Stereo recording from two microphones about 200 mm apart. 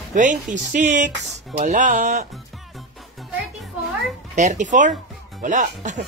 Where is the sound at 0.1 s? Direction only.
40° right (ahead or behind).